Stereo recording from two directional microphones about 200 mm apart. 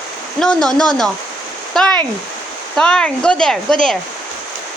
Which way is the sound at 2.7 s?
5° left (ahead or behind).